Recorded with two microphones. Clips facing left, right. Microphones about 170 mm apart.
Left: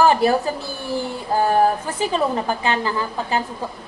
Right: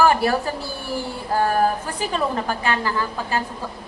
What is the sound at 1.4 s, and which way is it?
A woman's voice, 20° left (ahead or behind).